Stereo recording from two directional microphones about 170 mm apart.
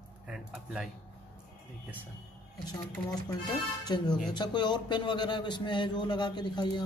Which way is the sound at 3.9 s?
25° left (ahead or behind).